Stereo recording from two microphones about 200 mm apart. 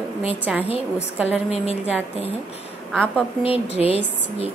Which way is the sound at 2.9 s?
5° left (ahead or behind).